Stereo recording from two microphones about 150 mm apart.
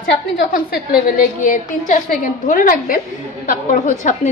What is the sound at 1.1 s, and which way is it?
A woman's voice, 60° left (ahead or behind).